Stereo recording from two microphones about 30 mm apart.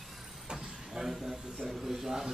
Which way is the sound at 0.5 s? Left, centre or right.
Right.